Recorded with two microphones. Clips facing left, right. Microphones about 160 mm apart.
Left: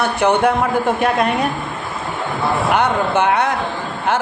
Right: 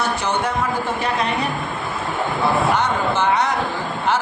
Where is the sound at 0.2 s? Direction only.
60° left (ahead or behind).